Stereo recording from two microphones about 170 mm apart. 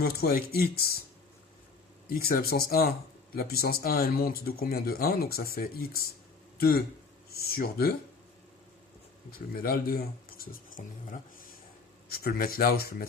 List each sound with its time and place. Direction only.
0.0 s speech: 65° left (ahead or behind)
2.0 s speech: 60° left (ahead or behind)
9.6 s speech: 60° left (ahead or behind)
12.0 s speech: 65° left (ahead or behind)